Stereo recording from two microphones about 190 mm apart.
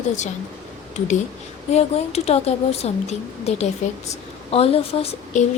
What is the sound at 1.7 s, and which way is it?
A woman's voice, 35° left (ahead or behind).